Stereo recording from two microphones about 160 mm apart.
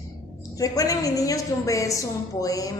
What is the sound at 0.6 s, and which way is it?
A woman's voice, 20° left (ahead or behind).